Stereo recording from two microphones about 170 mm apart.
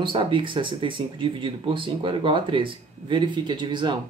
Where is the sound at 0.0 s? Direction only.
30° right (ahead or behind).